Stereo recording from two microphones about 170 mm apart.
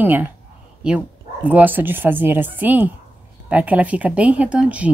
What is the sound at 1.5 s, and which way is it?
Speech, 10° right (ahead or behind).